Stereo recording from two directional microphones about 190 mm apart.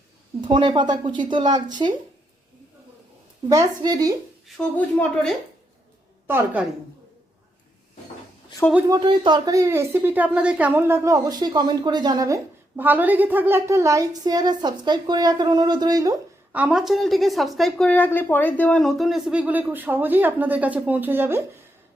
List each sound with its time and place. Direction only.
0.4 s a woman's voice: 25° right (ahead or behind)
3.5 s a woman's voice: 20° right (ahead or behind)
4.4 s speech: 5° left (ahead or behind)
6.2 s a woman's voice: 10° right (ahead or behind)
8.9 s a woman's voice: 25° right (ahead or behind)
16.5 s speech: 5° right (ahead or behind)